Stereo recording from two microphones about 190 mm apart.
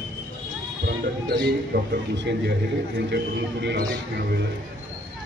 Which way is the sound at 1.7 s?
65° right (ahead or behind).